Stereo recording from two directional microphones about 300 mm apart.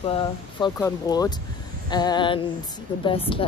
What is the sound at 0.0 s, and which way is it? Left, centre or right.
Speech, centre.